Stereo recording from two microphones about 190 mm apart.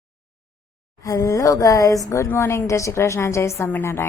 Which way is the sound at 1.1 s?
15° left (ahead or behind).